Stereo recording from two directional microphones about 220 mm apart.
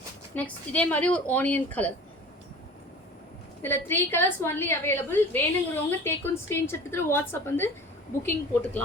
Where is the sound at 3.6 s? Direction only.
10° left (ahead or behind).